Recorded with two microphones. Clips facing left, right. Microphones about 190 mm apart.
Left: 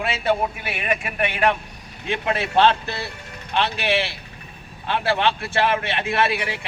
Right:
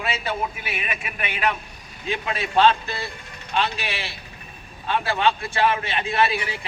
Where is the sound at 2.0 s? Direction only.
60° left (ahead or behind).